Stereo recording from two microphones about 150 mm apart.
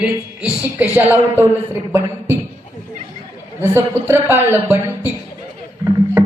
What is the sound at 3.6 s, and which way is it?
A woman's voice, 15° right (ahead or behind).